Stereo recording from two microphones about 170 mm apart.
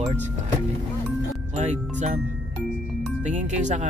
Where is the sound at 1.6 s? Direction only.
45° right (ahead or behind).